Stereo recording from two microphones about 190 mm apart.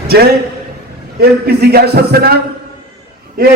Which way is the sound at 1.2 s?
55° right (ahead or behind).